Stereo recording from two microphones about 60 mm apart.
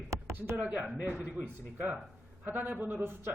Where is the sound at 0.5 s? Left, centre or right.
Right.